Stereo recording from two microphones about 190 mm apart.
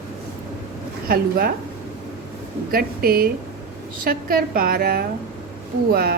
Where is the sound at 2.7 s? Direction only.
50° right (ahead or behind).